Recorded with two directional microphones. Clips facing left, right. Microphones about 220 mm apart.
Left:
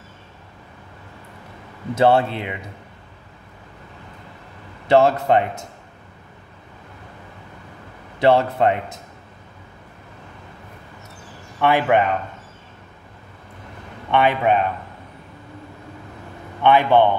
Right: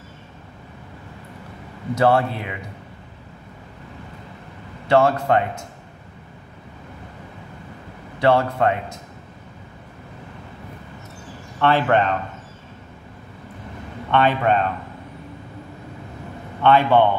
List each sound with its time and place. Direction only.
2.0 s a man's voice: 25° left (ahead or behind)
4.8 s a man's voice: 20° left (ahead or behind)
8.2 s a man's voice: 20° left (ahead or behind)
11.6 s a man's voice: 10° left (ahead or behind)
14.1 s a man's voice: 10° left (ahead or behind)
16.6 s a man's voice: 15° left (ahead or behind)